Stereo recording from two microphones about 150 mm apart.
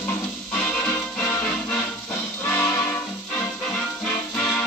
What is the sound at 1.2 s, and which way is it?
Music, 20° left (ahead or behind).